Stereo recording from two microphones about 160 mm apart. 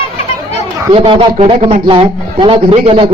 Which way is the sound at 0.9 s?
35° right (ahead or behind).